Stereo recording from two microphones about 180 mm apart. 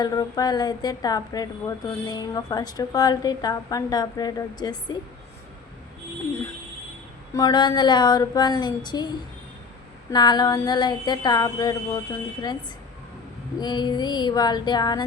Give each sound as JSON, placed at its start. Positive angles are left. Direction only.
{"t": 0.0, "sound": "a woman's voice", "side_deg": 20}
{"t": 7.3, "sound": "a woman's voice", "side_deg": 25}
{"t": 13.6, "sound": "a woman's voice", "side_deg": 25}